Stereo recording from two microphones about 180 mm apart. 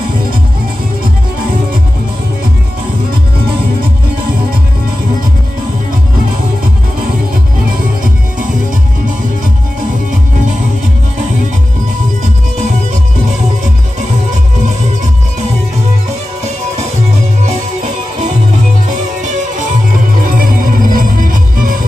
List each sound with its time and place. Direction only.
20.2 s music: 50° right (ahead or behind)